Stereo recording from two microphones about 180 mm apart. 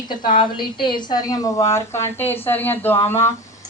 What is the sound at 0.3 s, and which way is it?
Speech, 25° left (ahead or behind).